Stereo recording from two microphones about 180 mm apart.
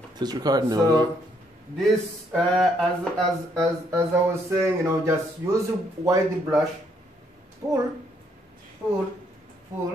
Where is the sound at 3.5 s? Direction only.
15° right (ahead or behind).